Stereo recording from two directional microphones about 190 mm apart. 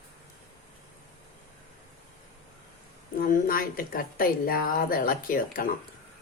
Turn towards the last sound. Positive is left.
turn(degrees=50)  # may be behind; listen again after turning